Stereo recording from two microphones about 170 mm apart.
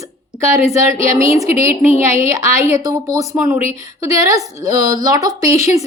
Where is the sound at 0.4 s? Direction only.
15° right (ahead or behind).